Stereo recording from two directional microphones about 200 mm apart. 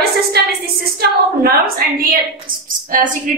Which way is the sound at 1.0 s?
50° right (ahead or behind).